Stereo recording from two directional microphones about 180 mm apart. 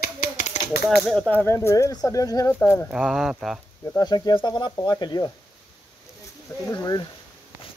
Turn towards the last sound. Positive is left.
turn(degrees=20)  # may be behind; listen again after turning